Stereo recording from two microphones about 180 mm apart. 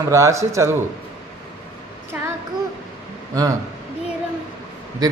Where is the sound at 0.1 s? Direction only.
15° right (ahead or behind).